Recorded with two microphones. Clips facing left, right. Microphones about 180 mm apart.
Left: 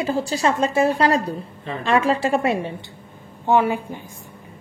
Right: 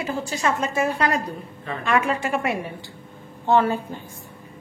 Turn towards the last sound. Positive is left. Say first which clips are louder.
# left 1 dB
turn(degrees=15)  # may be behind; listen again after turning